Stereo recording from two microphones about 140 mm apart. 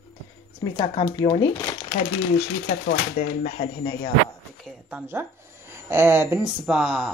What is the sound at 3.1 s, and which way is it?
Speech, 65° left (ahead or behind).